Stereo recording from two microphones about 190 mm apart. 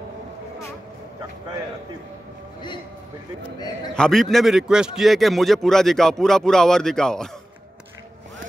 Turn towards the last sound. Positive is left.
turn(degrees=5)  # may be behind; listen again after turning